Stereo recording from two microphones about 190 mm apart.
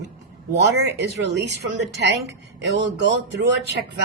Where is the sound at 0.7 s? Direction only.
65° right (ahead or behind).